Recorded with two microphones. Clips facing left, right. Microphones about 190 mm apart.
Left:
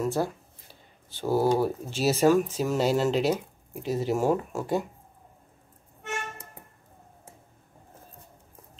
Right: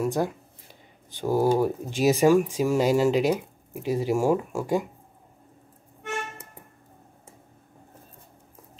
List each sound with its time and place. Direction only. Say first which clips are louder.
0.0 s speech: right 2 dB; 15° right (ahead or behind)